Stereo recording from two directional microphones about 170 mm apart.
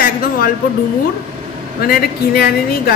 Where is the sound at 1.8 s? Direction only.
60° left (ahead or behind).